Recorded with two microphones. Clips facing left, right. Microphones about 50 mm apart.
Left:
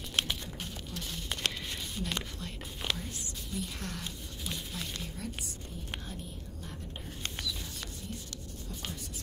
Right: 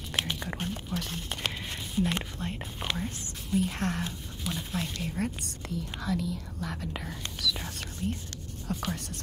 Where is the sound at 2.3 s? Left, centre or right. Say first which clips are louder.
Right 7 dB; right.